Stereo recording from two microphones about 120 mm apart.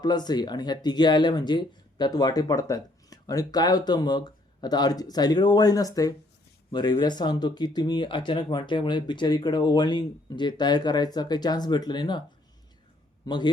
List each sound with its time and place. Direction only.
0.0 s speech: 35° left (ahead or behind)
13.2 s speech: 40° left (ahead or behind)